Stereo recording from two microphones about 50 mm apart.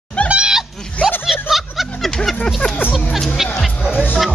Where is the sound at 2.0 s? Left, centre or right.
Centre.